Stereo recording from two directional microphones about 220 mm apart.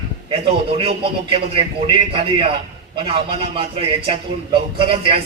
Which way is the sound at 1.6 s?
25° right (ahead or behind).